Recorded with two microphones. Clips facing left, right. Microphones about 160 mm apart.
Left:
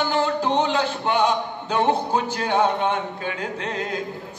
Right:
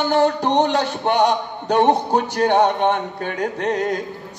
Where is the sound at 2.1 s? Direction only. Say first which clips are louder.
Right 5 dB; 45° right (ahead or behind).